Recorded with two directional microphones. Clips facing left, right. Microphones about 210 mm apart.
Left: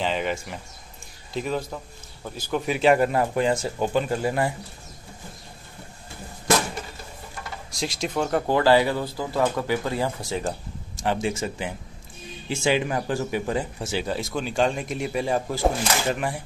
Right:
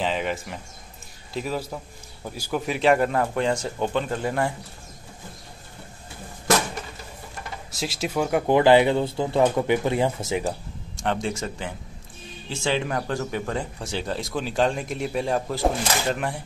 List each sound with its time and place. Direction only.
0.0 s a sound: centre (ahead or behind)
1.3 s speech: 5° right (ahead or behind)
2.6 s speech: centre (ahead or behind)
7.7 s speech: 5° right (ahead or behind); by 10.4 s 20° right (ahead or behind)
11.0 s speech: 5° left (ahead or behind)